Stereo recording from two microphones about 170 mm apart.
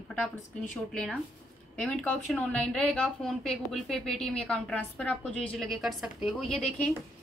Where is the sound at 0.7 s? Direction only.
5° left (ahead or behind).